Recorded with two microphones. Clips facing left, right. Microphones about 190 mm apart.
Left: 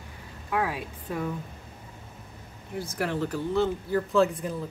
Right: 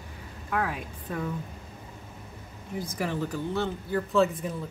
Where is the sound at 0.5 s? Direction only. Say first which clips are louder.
Left 2 dB; 5° left (ahead or behind).